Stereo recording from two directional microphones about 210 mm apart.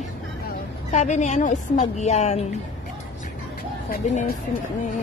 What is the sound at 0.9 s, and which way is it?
A woman's voice, 35° left (ahead or behind).